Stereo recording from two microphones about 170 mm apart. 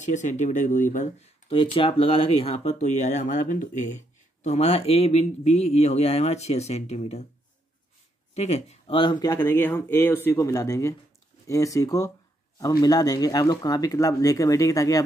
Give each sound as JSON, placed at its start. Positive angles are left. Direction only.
{"t": 0.0, "sound": "speech", "side_deg": 45}
{"t": 8.4, "sound": "speech", "side_deg": 40}